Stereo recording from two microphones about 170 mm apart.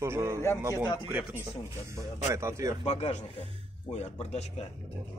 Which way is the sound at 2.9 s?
40° left (ahead or behind).